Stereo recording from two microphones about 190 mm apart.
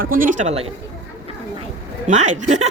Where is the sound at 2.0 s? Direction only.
40° right (ahead or behind).